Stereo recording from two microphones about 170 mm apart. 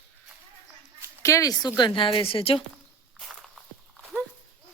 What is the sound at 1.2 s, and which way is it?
A woman's voice, 20° left (ahead or behind).